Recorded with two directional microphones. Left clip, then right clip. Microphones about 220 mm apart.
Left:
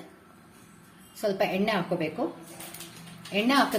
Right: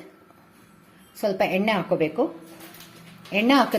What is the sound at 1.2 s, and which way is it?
A woman's voice, 25° right (ahead or behind).